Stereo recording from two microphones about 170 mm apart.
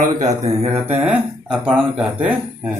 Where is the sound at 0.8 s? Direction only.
10° right (ahead or behind).